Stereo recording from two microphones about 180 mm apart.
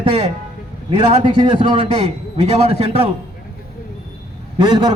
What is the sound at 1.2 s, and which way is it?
A man's voice, 30° right (ahead or behind).